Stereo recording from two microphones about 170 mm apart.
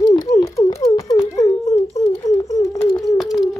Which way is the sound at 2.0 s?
20° left (ahead or behind).